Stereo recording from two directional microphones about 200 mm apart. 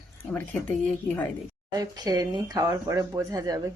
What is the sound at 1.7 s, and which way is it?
Speech, 20° right (ahead or behind).